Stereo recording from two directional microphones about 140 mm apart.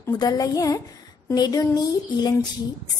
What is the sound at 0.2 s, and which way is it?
A woman's voice, 30° left (ahead or behind).